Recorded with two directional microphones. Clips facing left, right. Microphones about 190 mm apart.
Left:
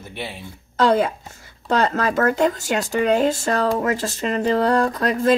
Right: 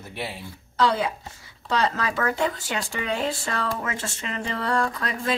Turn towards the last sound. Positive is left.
turn(degrees=40)  # may be behind; listen again after turning